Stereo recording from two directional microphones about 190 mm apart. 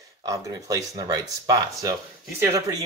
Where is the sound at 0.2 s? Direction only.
20° right (ahead or behind).